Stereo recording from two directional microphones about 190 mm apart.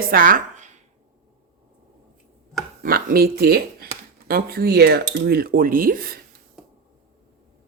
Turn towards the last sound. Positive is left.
turn(degrees=-50)  # may be behind; listen again after turning